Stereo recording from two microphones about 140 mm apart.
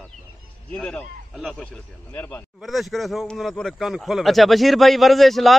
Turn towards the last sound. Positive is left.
turn(degrees=0)  # may be behind; listen again after turning